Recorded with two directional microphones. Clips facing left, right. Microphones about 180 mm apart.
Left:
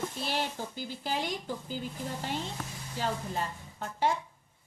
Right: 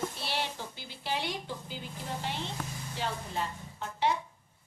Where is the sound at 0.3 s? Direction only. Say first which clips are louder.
Left 2 dB; 45° left (ahead or behind).